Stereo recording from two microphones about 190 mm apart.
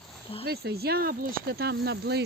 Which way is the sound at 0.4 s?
55° right (ahead or behind).